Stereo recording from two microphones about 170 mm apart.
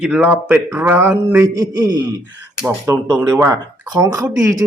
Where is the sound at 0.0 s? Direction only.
5° right (ahead or behind).